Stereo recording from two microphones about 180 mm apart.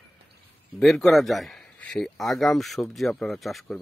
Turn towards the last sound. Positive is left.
turn(degrees=0)  # may be behind; listen again after turning